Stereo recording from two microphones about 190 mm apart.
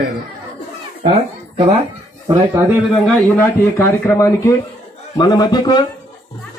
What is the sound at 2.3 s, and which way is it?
Speech, 15° right (ahead or behind).